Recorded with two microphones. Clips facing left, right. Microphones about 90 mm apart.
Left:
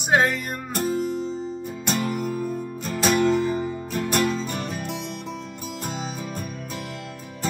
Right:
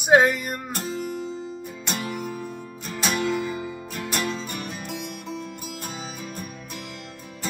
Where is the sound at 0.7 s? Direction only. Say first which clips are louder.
Left 9 dB; 50° left (ahead or behind).